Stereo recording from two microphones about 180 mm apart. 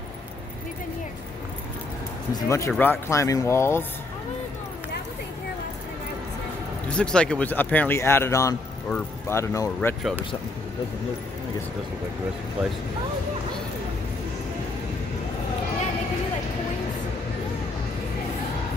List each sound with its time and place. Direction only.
2.3 s speech: 15° left (ahead or behind)
6.9 s speech: 5° left (ahead or behind)
9.8 s speech: 5° left (ahead or behind)